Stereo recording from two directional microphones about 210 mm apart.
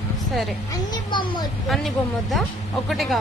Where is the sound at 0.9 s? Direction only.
20° left (ahead or behind).